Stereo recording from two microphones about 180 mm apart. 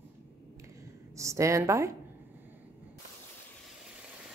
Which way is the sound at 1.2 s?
15° right (ahead or behind).